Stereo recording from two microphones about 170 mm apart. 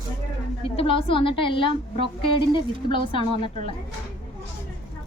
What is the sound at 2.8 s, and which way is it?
Speech, 30° left (ahead or behind).